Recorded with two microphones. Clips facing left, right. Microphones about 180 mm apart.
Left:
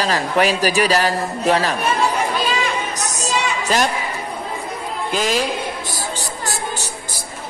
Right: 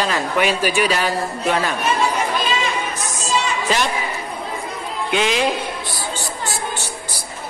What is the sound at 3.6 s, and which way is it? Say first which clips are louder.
Speech: left 5 dB; 45° left (ahead or behind).